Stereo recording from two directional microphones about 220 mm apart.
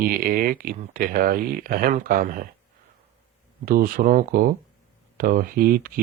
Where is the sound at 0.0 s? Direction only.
40° right (ahead or behind).